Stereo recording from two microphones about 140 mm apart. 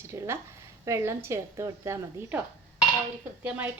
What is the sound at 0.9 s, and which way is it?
A woman's voice, 20° right (ahead or behind).